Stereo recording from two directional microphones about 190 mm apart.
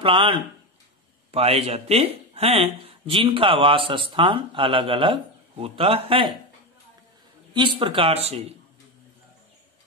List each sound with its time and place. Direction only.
0.0 s speech: 25° right (ahead or behind)
7.5 s speech: 25° right (ahead or behind)